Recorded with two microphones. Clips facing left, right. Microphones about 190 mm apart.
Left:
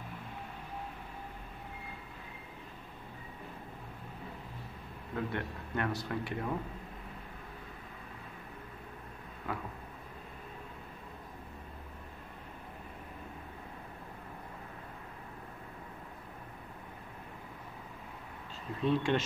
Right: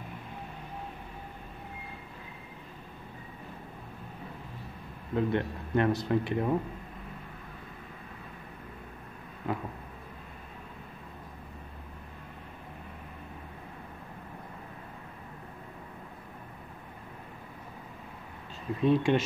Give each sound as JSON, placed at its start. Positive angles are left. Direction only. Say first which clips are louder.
{"t": 5.1, "sound": "speech", "louder": "right 8 dB", "side_deg": -25}
{"t": 18.8, "sound": "speech", "louder": "right 5 dB", "side_deg": -15}